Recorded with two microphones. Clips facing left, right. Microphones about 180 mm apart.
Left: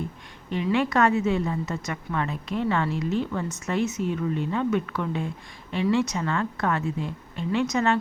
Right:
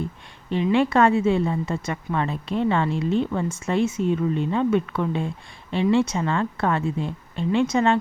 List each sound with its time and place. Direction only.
0.5 s a woman's voice: 25° right (ahead or behind)